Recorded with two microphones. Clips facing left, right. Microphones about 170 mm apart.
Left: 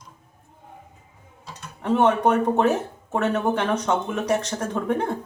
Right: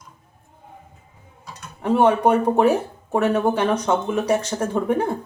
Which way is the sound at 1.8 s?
10° right (ahead or behind).